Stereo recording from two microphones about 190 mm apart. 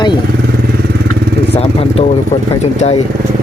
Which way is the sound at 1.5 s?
30° left (ahead or behind).